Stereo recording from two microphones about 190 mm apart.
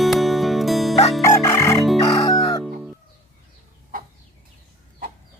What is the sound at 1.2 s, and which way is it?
Chicken, 15° left (ahead or behind).